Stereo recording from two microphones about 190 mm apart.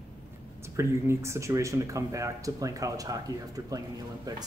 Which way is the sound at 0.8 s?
15° right (ahead or behind).